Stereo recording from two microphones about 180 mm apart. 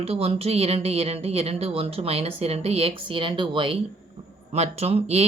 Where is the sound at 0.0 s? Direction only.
35° right (ahead or behind).